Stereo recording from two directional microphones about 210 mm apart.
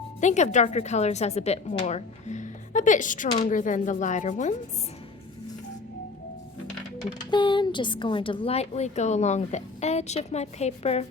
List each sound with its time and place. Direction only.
0.2 s a woman's voice: 35° left (ahead or behind)
7.0 s a woman's voice: 20° left (ahead or behind)